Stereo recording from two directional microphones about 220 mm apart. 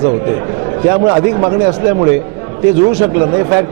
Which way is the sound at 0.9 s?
25° right (ahead or behind).